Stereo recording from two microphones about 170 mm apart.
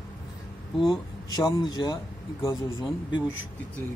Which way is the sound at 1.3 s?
25° left (ahead or behind).